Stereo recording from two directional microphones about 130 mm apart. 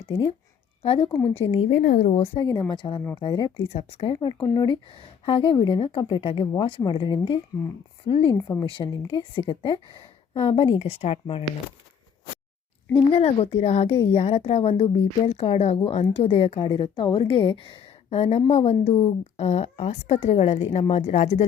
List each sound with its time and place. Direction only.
0.1 s a woman's voice: 35° left (ahead or behind)
1.7 s a woman's voice: 85° left; by 2.4 s 55° left (ahead or behind)
2.4 s speech: 30° left (ahead or behind)
3.7 s a woman's voice: 50° left (ahead or behind)
4.1 s speech: 35° left (ahead or behind)
8.4 s a woman's voice: 25° left (ahead or behind)
8.6 s a woman's voice: 40° left (ahead or behind)
13.1 s a woman's voice: 50° left (ahead or behind)